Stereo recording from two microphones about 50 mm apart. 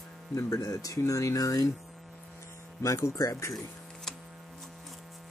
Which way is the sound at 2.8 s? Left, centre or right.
Left.